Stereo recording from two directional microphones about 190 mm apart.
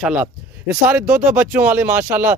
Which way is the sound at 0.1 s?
5° right (ahead or behind).